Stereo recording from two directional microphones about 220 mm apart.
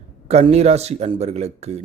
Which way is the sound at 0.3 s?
30° right (ahead or behind).